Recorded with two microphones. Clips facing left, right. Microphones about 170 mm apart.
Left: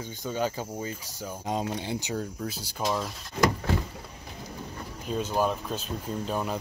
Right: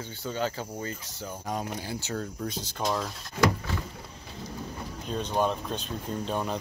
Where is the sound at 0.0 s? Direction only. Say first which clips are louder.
Left 1 dB; 15° left (ahead or behind).